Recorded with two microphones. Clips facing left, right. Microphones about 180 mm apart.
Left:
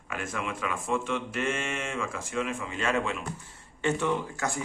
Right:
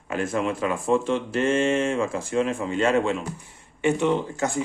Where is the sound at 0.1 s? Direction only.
30° right (ahead or behind).